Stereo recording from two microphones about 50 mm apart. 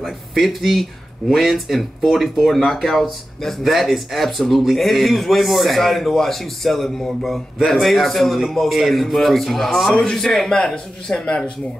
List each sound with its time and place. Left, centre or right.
0.0 s speech: centre
10.5 s speech: centre